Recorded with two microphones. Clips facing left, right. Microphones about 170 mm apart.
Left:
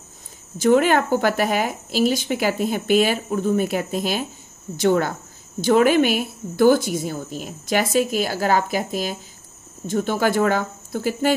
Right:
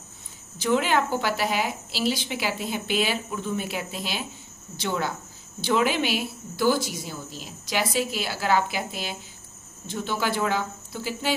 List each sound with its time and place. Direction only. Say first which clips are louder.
0.6 s speech: left 7 dB; 50° left (ahead or behind)